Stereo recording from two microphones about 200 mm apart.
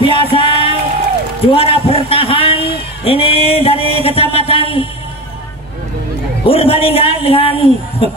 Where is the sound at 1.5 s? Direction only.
30° left (ahead or behind).